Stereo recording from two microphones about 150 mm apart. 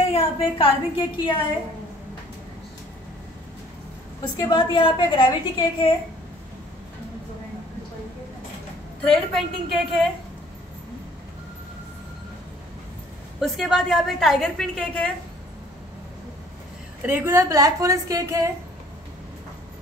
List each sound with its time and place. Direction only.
0.1 s a woman's voice: 40° left (ahead or behind)
4.2 s a woman's voice: 30° left (ahead or behind)
9.0 s a woman's voice: centre (ahead or behind)
13.4 s a woman's voice: centre (ahead or behind)
17.0 s a woman's voice: 15° right (ahead or behind)